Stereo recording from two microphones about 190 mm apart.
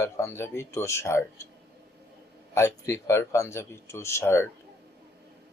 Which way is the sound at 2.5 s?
15° left (ahead or behind).